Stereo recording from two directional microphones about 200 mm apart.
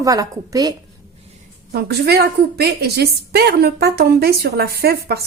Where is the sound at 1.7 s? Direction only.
55° right (ahead or behind).